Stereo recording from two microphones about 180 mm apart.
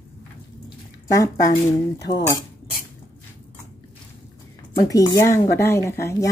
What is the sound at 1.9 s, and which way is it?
Speech, 20° left (ahead or behind).